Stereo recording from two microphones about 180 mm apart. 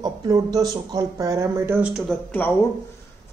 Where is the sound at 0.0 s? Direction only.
20° right (ahead or behind); by 2.1 s 5° right (ahead or behind).